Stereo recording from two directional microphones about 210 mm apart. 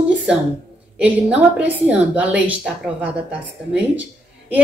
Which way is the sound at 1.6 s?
5° right (ahead or behind).